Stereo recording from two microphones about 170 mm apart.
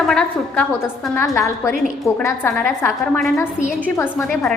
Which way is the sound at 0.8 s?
15° left (ahead or behind).